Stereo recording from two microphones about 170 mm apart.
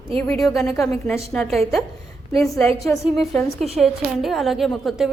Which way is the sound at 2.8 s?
Centre (ahead or behind).